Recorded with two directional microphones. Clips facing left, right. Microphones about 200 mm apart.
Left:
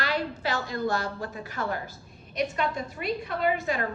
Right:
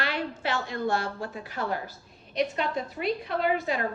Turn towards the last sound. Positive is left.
turn(degrees=45)  # may be behind; listen again after turning